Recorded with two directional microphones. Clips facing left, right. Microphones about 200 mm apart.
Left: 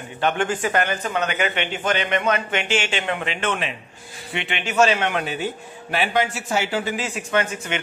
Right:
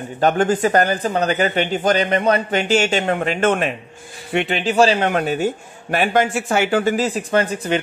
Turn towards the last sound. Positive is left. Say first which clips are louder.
# right 5 dB
turn(degrees=-35)  # may be behind; listen again after turning